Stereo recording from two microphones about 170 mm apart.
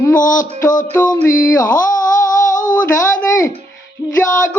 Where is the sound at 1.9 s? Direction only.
50° left (ahead or behind).